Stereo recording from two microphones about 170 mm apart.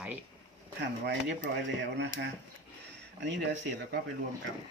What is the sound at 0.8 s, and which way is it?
Speech, 90° right.